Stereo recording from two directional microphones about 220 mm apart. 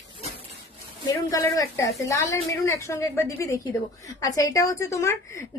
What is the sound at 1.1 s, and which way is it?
A woman's voice, 15° left (ahead or behind).